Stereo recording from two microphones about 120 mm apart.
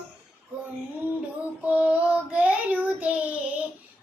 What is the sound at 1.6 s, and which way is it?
Child singing, 10° right (ahead or behind).